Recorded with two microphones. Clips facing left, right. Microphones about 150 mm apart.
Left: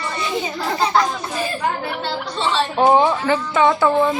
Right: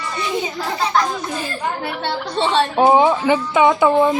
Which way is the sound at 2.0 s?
55° right (ahead or behind).